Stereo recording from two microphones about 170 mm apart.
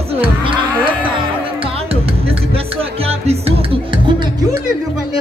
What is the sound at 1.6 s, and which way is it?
Music, 35° right (ahead or behind).